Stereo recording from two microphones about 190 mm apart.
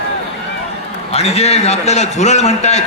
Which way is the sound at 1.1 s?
35° left (ahead or behind).